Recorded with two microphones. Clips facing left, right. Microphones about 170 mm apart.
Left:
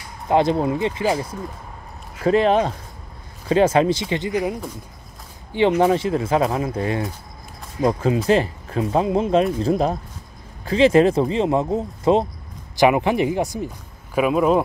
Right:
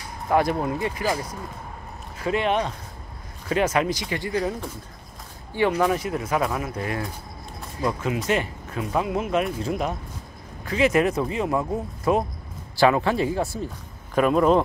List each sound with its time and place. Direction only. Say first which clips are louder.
0.3 s speech: left 4 dB; 25° left (ahead or behind)
2.2 s speech: left 7 dB; 35° left (ahead or behind); by 13.7 s 15° left (ahead or behind)
14.1 s speech: left 1 dB; 5° left (ahead or behind)